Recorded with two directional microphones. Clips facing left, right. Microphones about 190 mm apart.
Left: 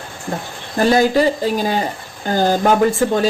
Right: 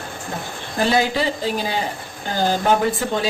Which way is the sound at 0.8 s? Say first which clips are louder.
Left 6 dB; 45° left (ahead or behind).